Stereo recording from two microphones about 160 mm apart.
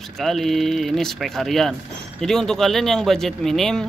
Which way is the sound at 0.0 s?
Centre (ahead or behind).